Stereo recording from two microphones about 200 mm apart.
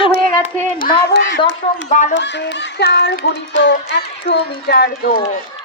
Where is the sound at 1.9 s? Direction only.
40° left (ahead or behind).